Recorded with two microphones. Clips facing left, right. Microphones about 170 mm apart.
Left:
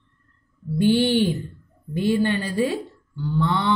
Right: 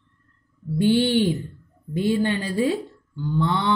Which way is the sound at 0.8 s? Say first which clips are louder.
Even; 15° right (ahead or behind).